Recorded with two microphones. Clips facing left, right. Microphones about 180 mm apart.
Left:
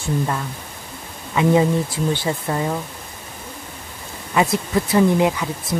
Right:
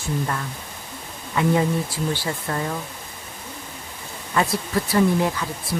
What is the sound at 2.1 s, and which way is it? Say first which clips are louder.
Speech: left 4 dB; 20° left (ahead or behind).